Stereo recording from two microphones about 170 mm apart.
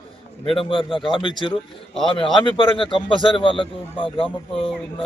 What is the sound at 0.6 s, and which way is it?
A man's voice, 30° left (ahead or behind).